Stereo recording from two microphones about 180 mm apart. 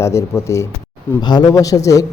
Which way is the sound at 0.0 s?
15° left (ahead or behind).